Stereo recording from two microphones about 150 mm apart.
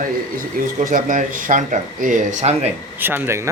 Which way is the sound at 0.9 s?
65° right (ahead or behind).